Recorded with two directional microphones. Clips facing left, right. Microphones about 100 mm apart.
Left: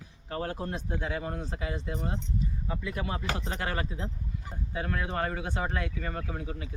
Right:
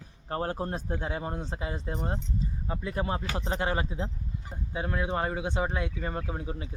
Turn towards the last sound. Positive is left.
turn(degrees=-25)  # may be behind; listen again after turning